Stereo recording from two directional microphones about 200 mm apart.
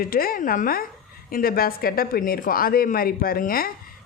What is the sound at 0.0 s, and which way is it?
A man's voice, 45° left (ahead or behind).